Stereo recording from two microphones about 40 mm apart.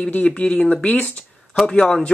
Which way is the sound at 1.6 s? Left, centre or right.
Left.